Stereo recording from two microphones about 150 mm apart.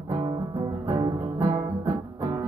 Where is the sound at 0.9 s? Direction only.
25° right (ahead or behind).